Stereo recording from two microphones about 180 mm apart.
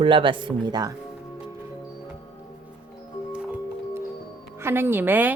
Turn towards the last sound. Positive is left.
turn(degrees=-10)  # may be behind; listen again after turning